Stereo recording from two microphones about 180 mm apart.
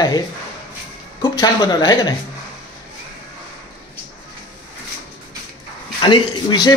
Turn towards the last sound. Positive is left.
turn(degrees=25)  # may be behind; listen again after turning